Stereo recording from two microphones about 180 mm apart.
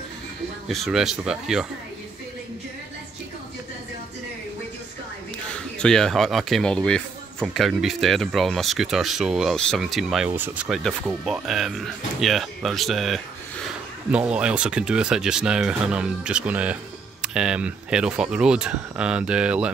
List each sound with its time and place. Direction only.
0.7 s speech: centre (ahead or behind)
5.5 s speech: 5° left (ahead or behind)